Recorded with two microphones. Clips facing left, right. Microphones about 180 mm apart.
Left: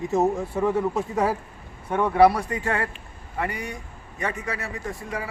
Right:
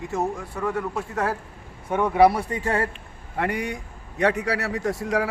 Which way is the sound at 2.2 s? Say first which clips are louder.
Even; 25° right (ahead or behind).